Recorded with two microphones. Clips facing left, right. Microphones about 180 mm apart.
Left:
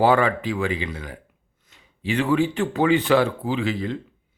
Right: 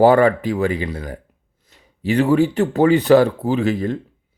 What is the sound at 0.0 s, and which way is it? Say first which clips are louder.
Speech: right 6 dB; 40° right (ahead or behind).